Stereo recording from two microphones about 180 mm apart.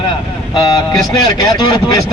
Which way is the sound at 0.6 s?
20° left (ahead or behind).